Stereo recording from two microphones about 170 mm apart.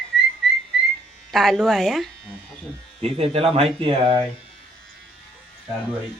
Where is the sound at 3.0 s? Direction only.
35° right (ahead or behind).